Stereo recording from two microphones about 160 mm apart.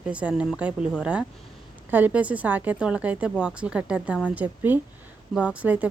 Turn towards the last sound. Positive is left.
turn(degrees=-10)  # may be behind; listen again after turning